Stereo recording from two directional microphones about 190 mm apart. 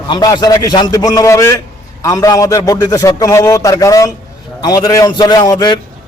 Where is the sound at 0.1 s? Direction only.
20° left (ahead or behind).